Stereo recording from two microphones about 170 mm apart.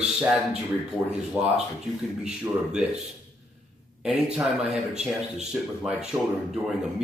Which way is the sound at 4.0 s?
5° right (ahead or behind).